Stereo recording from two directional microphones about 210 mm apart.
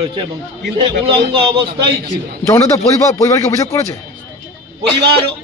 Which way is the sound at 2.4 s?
15° left (ahead or behind).